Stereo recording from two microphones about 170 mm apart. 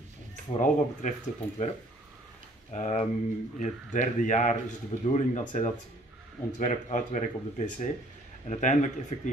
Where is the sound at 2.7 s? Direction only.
40° left (ahead or behind).